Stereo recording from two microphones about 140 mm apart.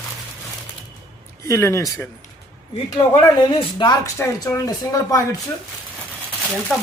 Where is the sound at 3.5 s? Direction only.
35° left (ahead or behind).